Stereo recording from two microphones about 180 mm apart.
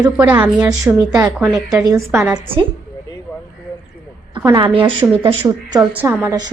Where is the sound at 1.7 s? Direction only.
15° right (ahead or behind).